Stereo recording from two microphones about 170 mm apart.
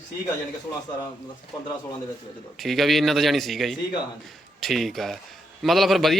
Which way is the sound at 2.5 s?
Centre (ahead or behind).